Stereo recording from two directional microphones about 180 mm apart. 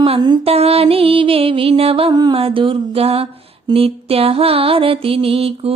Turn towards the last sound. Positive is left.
turn(degrees=-30)  # may be behind; listen again after turning